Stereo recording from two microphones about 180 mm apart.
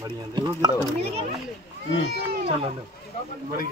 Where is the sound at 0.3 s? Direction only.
25° right (ahead or behind).